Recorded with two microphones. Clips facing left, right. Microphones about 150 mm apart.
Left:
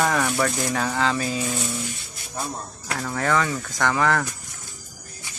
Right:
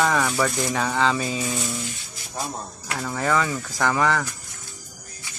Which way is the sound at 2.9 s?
5° right (ahead or behind).